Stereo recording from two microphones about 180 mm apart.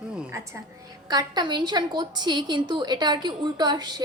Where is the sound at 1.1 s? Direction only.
20° right (ahead or behind).